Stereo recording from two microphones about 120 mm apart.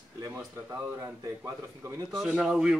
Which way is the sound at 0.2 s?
25° right (ahead or behind).